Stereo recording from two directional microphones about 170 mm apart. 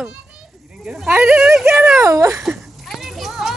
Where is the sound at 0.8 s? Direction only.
10° right (ahead or behind).